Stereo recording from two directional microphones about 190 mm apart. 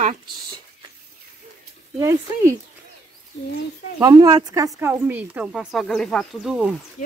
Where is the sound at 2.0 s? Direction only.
15° right (ahead or behind).